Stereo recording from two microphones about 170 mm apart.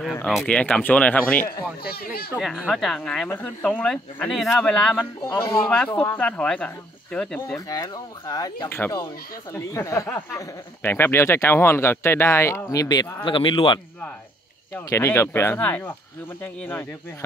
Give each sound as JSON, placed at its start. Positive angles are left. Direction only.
{"t": 0.3, "sound": "speech", "side_deg": 5}
{"t": 1.4, "sound": "speech", "side_deg": 65}
{"t": 2.3, "sound": "speech", "side_deg": 0}
{"t": 5.2, "sound": "speech", "side_deg": 20}
{"t": 5.7, "sound": "speech", "side_deg": 5}
{"t": 7.7, "sound": "speech", "side_deg": 20}
{"t": 14.9, "sound": "speech", "side_deg": 15}